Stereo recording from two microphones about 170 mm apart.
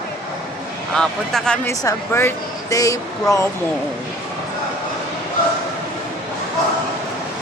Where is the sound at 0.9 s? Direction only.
5° left (ahead or behind).